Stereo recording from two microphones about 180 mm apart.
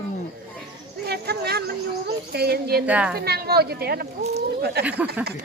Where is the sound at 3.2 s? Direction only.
60° right (ahead or behind).